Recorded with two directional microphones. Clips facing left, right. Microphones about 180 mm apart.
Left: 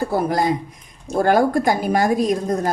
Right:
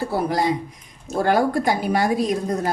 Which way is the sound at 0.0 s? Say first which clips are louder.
Left 2 dB; 45° left (ahead or behind).